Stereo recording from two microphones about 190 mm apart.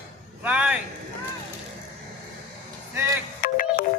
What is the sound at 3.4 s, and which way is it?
Music, 45° left (ahead or behind).